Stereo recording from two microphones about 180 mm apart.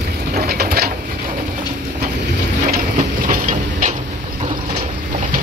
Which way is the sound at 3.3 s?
45° right (ahead or behind).